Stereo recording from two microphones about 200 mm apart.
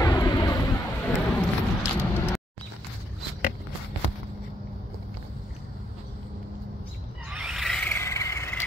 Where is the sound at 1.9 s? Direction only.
15° left (ahead or behind).